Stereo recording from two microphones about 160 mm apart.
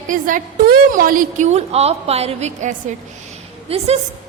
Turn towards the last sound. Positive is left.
turn(degrees=-35)  # may be behind; listen again after turning